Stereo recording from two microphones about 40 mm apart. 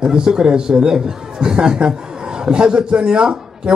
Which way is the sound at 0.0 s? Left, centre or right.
Centre.